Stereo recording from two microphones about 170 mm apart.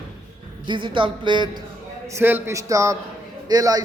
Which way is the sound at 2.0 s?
15° right (ahead or behind).